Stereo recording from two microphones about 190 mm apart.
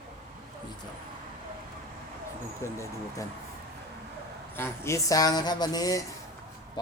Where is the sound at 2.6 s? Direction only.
15° left (ahead or behind).